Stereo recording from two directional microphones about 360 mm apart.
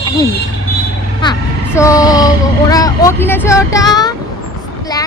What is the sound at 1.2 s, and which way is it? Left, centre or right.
Speech, centre.